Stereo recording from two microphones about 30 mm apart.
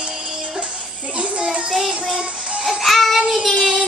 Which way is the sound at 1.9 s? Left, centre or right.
Right.